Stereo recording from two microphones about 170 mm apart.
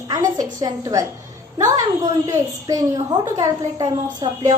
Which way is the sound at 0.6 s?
20° right (ahead or behind).